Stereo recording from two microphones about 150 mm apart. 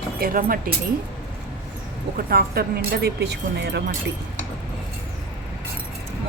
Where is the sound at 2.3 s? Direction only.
90° right.